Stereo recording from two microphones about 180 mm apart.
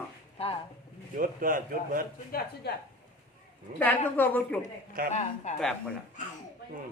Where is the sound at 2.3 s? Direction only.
60° left (ahead or behind).